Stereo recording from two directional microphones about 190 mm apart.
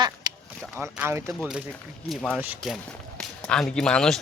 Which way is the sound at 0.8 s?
10° right (ahead or behind).